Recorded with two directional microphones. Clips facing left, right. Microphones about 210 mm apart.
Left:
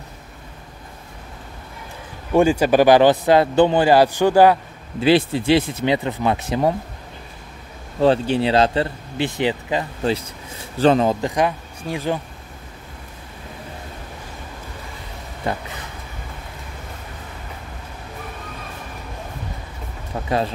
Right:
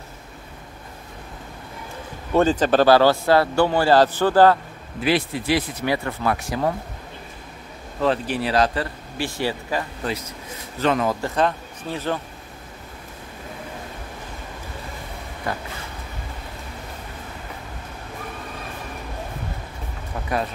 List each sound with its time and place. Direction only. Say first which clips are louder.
2.3 s speech: left 2 dB; 10° left (ahead or behind)
5.0 s speech: left 6 dB; 30° left (ahead or behind)
8.0 s speech: left 5 dB; 30° left (ahead or behind); by 12.2 s 15° left (ahead or behind)
15.5 s speech: left 4 dB; 25° left (ahead or behind)
20.2 s speech: left 4 dB; 30° left (ahead or behind)